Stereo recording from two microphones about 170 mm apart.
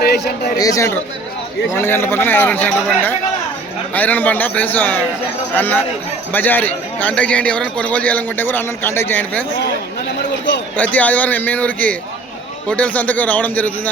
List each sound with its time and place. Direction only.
0.0 s speech: 70° left (ahead or behind)
0.6 s a man's voice: 20° left (ahead or behind)
10.8 s a man's voice: 10° left (ahead or behind)